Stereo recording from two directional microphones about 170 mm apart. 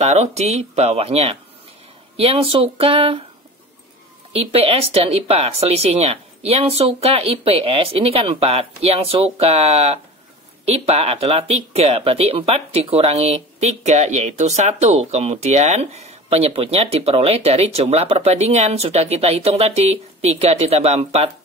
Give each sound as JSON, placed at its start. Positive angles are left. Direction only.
{"t": 0.0, "sound": "speech", "side_deg": -40}
{"t": 4.3, "sound": "speech", "side_deg": -35}